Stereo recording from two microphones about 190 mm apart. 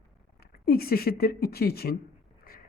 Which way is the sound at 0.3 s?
55° left (ahead or behind).